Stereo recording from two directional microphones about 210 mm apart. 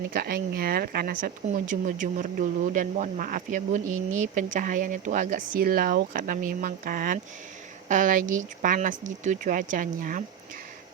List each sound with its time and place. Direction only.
0.1 s speech: 45° right (ahead or behind)